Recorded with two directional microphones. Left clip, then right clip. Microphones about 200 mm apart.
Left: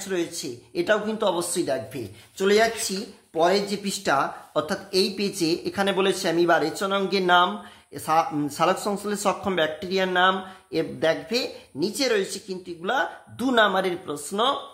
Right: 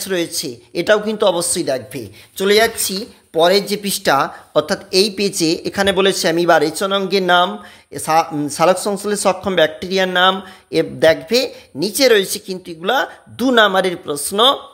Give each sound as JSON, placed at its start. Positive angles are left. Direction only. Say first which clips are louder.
{"t": 0.0, "sound": "speech", "louder": "right 8 dB", "side_deg": -40}